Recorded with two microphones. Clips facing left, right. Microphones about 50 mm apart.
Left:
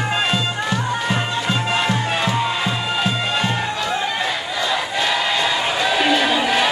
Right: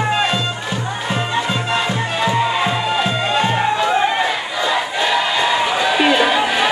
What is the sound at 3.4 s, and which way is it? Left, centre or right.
Battle cry, right.